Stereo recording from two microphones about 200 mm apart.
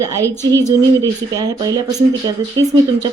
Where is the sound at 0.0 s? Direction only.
15° right (ahead or behind).